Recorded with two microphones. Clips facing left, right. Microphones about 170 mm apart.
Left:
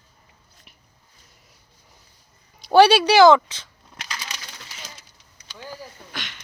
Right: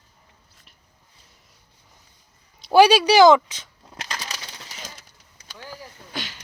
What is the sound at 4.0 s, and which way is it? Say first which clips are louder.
Crushing: right 2 dB; 35° right (ahead or behind).